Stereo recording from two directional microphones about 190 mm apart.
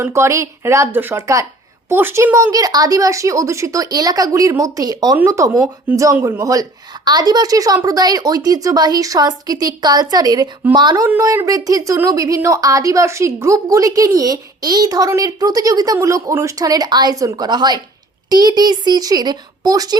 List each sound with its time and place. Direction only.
0.0 s a woman's voice: 15° right (ahead or behind)